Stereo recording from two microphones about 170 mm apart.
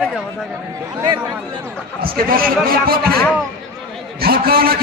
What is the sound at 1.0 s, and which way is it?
Speech, 25° right (ahead or behind).